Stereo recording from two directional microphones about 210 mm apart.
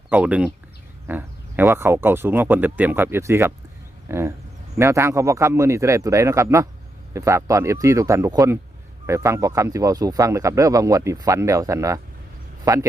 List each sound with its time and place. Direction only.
0.1 s speech: 5° right (ahead or behind)